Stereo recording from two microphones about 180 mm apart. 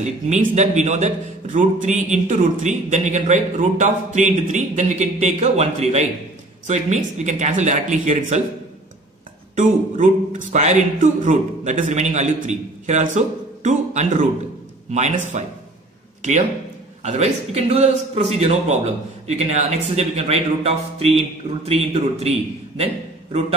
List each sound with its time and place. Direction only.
0.0 s a man's voice: 40° right (ahead or behind)
9.6 s a man's voice: 45° right (ahead or behind)